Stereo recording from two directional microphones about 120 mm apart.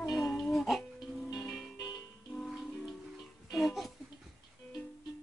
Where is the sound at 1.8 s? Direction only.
35° left (ahead or behind).